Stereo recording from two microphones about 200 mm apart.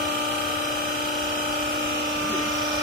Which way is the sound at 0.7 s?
45° right (ahead or behind).